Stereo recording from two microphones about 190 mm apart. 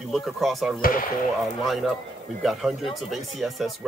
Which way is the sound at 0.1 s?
Centre (ahead or behind).